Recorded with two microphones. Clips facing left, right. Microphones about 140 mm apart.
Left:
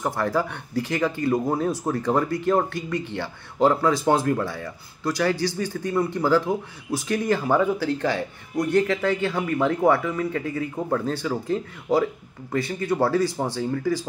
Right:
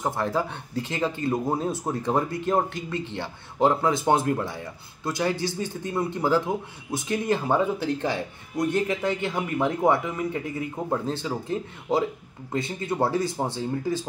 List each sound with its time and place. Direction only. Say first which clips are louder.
0.0 s speech: left 2 dB; 20° right (ahead or behind)